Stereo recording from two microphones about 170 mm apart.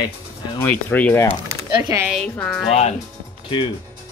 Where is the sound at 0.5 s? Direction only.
10° left (ahead or behind).